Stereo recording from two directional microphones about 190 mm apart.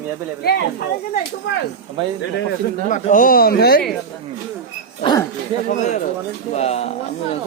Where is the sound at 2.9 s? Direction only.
40° left (ahead or behind).